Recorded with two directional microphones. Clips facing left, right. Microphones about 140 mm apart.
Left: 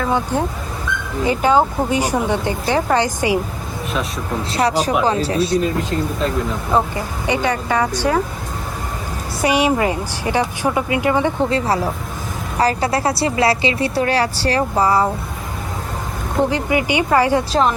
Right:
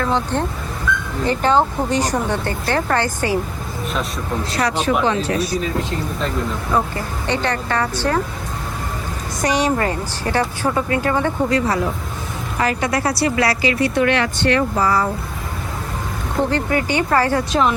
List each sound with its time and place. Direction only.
0.0 s speech: 10° left (ahead or behind)
4.5 s speech: 35° left (ahead or behind)
6.7 s a woman's voice: 25° left (ahead or behind)
7.3 s speech: 10° left (ahead or behind)
9.4 s speech: 10° left (ahead or behind)
11.4 s a woman's voice: 30° left (ahead or behind)
16.4 s speech: 15° left (ahead or behind)
17.5 s speech: 35° left (ahead or behind)